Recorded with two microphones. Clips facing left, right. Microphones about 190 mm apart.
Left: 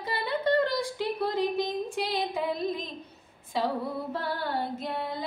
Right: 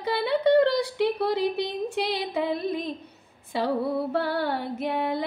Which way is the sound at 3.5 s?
65° right (ahead or behind).